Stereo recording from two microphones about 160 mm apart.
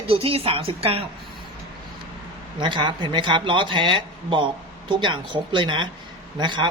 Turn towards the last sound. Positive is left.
turn(degrees=-30)  # may be behind; listen again after turning